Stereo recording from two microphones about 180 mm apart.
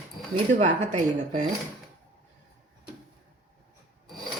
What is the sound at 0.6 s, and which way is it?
Speech, 40° right (ahead or behind).